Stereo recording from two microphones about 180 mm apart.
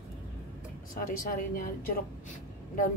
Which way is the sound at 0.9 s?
50° left (ahead or behind).